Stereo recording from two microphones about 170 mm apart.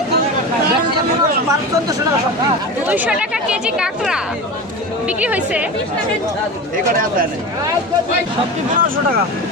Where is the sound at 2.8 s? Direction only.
10° right (ahead or behind).